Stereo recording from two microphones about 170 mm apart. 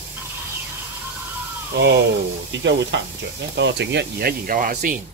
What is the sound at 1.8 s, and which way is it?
Speech, 90° right.